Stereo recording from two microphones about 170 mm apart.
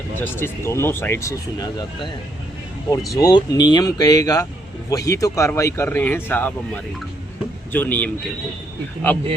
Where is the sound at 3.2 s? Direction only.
25° left (ahead or behind).